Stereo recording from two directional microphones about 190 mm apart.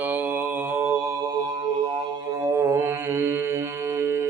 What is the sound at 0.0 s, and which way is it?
Mantra, 10° right (ahead or behind).